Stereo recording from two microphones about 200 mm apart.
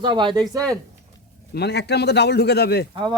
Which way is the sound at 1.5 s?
55° left (ahead or behind).